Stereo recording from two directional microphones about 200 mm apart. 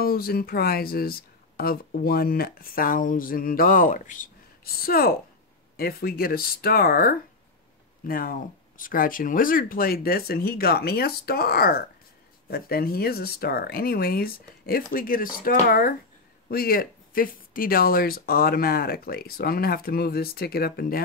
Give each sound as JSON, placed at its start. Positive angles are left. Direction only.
{"t": 0.0, "sound": "speech", "side_deg": 50}